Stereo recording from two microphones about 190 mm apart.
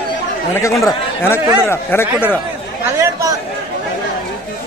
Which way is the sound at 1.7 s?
10° left (ahead or behind).